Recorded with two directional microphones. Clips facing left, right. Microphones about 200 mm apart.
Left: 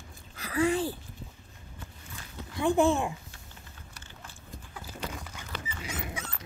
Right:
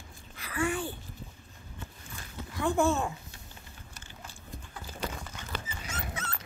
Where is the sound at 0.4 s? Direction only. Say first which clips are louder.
Left 5 dB; 35° left (ahead or behind).